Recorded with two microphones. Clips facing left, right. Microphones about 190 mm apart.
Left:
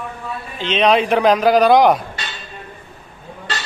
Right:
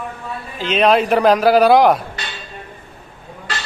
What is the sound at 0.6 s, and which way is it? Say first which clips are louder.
A man's voice: right 1 dB; 5° right (ahead or behind).